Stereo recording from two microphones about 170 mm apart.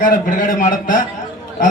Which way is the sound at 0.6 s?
50° left (ahead or behind).